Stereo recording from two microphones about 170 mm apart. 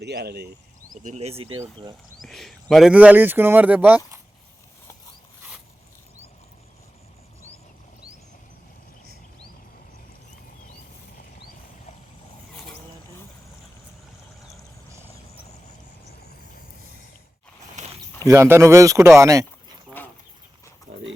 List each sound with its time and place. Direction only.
0.0 s speech: 70° right (ahead or behind)
0.9 s speech: 45° right (ahead or behind)
2.2 s speech: centre (ahead or behind)
17.8 s a sound: 45° right (ahead or behind)
18.3 s speech: 15° right (ahead or behind)
20.0 s chicken: 10° left (ahead or behind)